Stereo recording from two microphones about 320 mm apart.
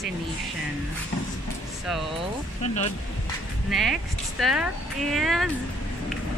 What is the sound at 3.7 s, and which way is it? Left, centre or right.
Speech, centre.